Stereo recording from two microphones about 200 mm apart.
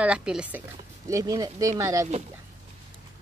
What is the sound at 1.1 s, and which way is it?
Speech, 20° right (ahead or behind).